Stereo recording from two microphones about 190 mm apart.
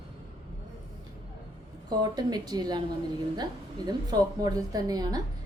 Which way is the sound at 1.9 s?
20° right (ahead or behind).